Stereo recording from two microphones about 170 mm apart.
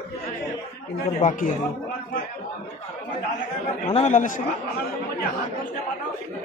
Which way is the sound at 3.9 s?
45° left (ahead or behind).